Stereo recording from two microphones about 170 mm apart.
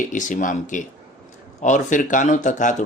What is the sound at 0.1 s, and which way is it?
A man's voice, 50° left (ahead or behind).